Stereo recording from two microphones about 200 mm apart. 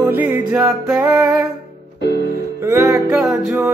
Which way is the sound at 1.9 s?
55° left (ahead or behind).